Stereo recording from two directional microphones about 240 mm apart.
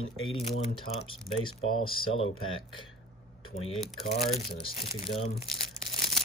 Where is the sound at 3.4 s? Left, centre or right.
Left.